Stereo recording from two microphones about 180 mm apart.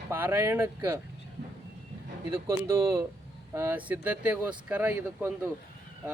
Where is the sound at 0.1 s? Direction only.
10° right (ahead or behind).